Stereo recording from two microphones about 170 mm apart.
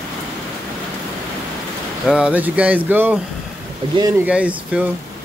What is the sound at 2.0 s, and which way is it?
Speech, 5° right (ahead or behind).